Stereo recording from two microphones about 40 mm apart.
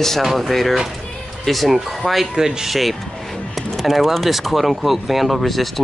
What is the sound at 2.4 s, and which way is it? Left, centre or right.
Speech, centre.